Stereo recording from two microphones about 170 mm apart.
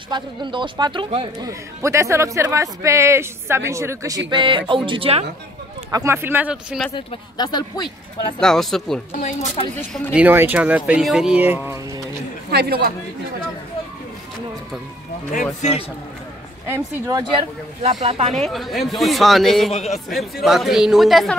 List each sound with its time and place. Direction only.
0.1 s speech: 25° right (ahead or behind)
4.3 s speech: 30° right (ahead or behind)
5.9 s speech: 20° right (ahead or behind)
6.9 s speech: 30° left (ahead or behind)
8.4 s a man's voice: 5° left (ahead or behind)
9.2 s speech: 40° left (ahead or behind)
10.1 s speech: 10° right (ahead or behind)
12.4 s speech: 65° right (ahead or behind)
15.3 s speech: 40° left (ahead or behind)
16.6 s speech: 15° right (ahead or behind)
18.0 s speech: 35° right (ahead or behind)
18.3 s a man's voice: centre (ahead or behind)
19.7 s a man's voice: 40° left (ahead or behind)
20.4 s a man's voice: centre (ahead or behind)